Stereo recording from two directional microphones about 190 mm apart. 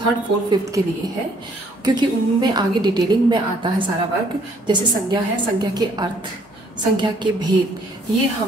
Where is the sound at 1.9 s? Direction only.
25° right (ahead or behind).